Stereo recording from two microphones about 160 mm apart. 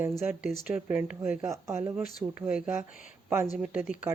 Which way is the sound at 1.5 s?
20° right (ahead or behind).